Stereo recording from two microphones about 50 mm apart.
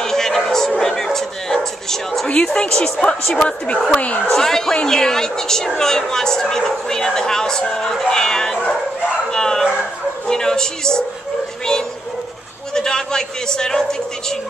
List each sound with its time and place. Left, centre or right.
0.0 s music: centre
2.2 s a woman's voice: centre
4.3 s a woman's voice: centre
9.3 s bow-wow: centre
10.2 s speech: centre
12.7 s a man's voice: centre